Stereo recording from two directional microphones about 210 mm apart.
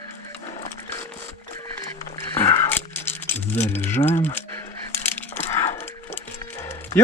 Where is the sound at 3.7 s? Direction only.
10° left (ahead or behind).